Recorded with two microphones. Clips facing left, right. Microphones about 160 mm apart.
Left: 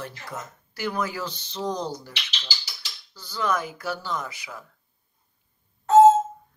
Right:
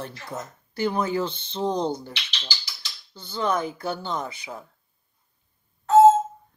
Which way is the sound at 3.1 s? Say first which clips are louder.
Right 1 dB; 25° right (ahead or behind).